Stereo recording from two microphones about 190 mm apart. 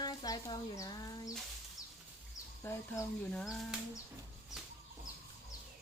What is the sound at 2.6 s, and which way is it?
Speech, 15° left (ahead or behind).